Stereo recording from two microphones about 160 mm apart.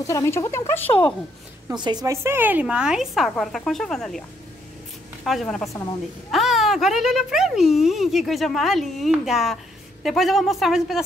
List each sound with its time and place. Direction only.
0.0 s speech: 20° left (ahead or behind)
1.8 s speech: 25° right (ahead or behind); by 4.2 s 5° left (ahead or behind)
5.2 s speech: centre (ahead or behind)